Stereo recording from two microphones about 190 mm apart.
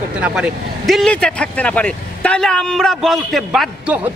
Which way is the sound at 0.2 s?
5° right (ahead or behind).